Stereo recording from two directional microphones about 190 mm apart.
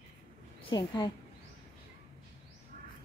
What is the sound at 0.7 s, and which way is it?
Speech, 25° left (ahead or behind).